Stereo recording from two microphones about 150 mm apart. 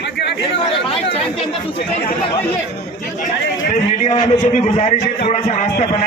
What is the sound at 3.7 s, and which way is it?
A man's voice, 55° left (ahead or behind).